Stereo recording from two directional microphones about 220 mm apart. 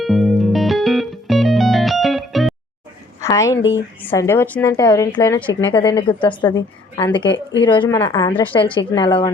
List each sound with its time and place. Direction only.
0.0 s music: centre (ahead or behind)
3.2 s a sound: 15° left (ahead or behind)
4.0 s a woman's voice: 10° left (ahead or behind)
5.7 s a woman's voice: 20° left (ahead or behind)
7.3 s speech: 55° left (ahead or behind)
7.6 s a woman's voice: 20° left (ahead or behind)